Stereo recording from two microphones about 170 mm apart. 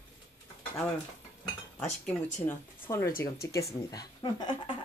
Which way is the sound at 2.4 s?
15° left (ahead or behind).